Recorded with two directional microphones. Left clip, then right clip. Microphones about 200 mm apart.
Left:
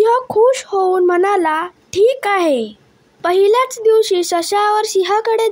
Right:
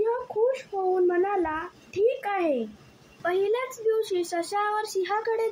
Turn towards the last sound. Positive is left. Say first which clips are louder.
# left 12 dB
turn(degrees=55)  # may be behind; listen again after turning